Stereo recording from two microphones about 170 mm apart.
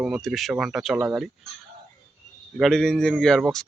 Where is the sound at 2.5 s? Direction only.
Centre (ahead or behind).